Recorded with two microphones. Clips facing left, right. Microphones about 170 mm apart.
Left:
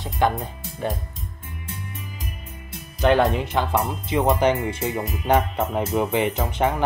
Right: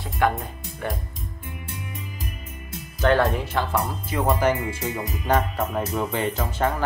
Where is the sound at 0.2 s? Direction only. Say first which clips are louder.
Left 1 dB; 25° left (ahead or behind).